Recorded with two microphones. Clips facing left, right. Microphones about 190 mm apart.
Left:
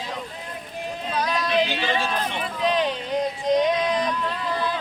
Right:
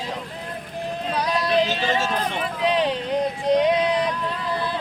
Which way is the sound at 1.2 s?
35° right (ahead or behind).